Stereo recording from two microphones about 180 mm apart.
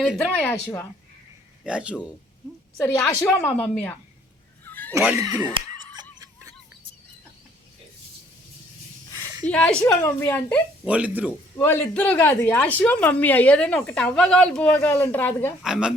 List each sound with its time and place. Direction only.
0.0 s speech: centre (ahead or behind)
0.3 s speech: 10° left (ahead or behind)
1.6 s speech: 5° right (ahead or behind)
2.8 s speech: 10° left (ahead or behind)
4.6 s a sound: 10° left (ahead or behind)
4.9 s laughter: 15° right (ahead or behind)
9.5 s speech: 5° left (ahead or behind)
10.8 s speech: 5° right (ahead or behind)
11.5 s speech: 10° left (ahead or behind)
15.6 s speech: 5° right (ahead or behind)